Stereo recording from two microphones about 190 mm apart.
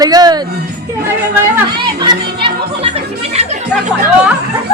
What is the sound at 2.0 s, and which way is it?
Music, 25° right (ahead or behind).